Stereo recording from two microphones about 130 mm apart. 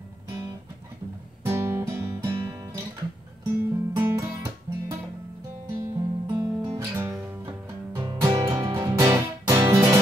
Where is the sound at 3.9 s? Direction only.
25° right (ahead or behind).